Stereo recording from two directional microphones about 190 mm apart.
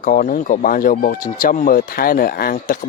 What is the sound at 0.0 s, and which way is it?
Speech, 45° left (ahead or behind).